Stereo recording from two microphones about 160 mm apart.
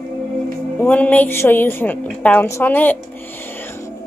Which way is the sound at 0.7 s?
10° left (ahead or behind).